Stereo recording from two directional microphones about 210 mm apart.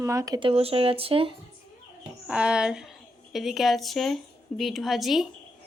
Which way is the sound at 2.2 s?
5° right (ahead or behind).